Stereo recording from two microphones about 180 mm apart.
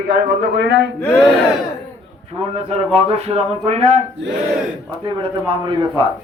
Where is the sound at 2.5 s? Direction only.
35° right (ahead or behind).